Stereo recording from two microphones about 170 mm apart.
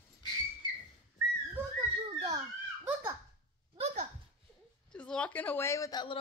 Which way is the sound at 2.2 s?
15° right (ahead or behind).